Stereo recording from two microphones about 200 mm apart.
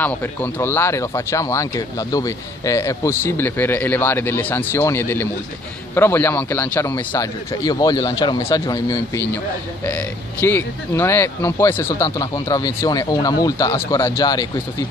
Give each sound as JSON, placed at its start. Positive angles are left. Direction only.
{"t": 0.0, "sound": "speech", "side_deg": 10}
{"t": 10.4, "sound": "speech", "side_deg": 10}